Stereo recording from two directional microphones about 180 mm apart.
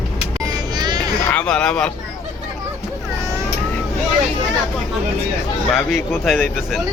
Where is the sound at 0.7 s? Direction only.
25° right (ahead or behind).